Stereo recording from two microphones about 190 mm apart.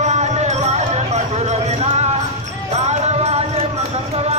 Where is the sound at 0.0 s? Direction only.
35° right (ahead or behind).